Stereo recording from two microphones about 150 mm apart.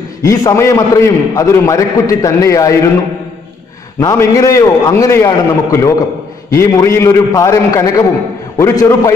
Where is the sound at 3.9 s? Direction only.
20° left (ahead or behind).